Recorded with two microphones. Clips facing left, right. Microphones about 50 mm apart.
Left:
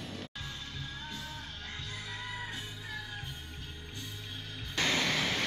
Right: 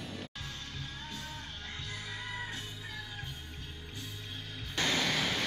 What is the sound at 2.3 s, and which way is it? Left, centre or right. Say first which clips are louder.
Music: right 2 dB; centre.